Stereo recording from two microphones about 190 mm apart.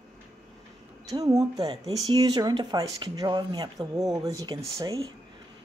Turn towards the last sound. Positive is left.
turn(degrees=-20)  # may be behind; listen again after turning